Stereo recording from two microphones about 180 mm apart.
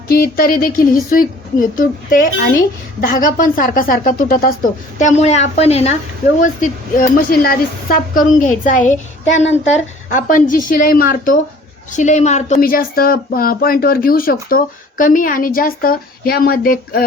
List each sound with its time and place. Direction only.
0.1 s speech: 55° left (ahead or behind)
4.9 s a woman's voice: 40° left (ahead or behind)
11.9 s speech: 40° left (ahead or behind)